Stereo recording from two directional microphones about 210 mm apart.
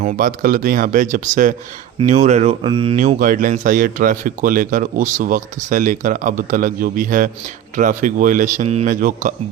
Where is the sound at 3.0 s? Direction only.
40° right (ahead or behind).